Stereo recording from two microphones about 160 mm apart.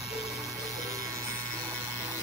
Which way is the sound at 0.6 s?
20° right (ahead or behind).